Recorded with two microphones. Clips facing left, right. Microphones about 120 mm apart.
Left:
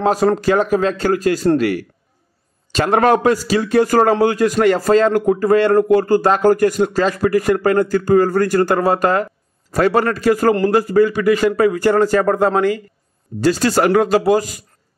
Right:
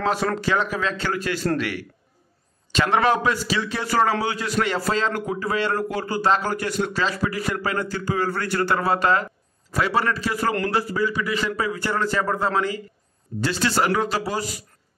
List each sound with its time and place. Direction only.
0.0 s speech: 40° left (ahead or behind)
13.4 s speech: 40° left (ahead or behind)